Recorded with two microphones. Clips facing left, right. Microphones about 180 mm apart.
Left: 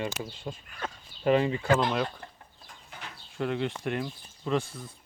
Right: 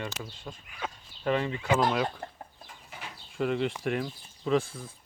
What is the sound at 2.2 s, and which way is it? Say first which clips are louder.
Chicken: right 6 dB; 40° right (ahead or behind).